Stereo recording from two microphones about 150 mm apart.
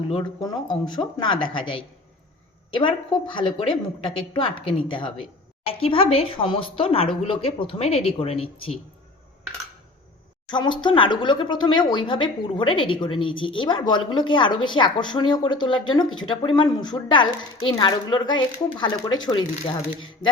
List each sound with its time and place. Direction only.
0.4 s speech: 30° left (ahead or behind)
10.5 s speech: 30° left (ahead or behind)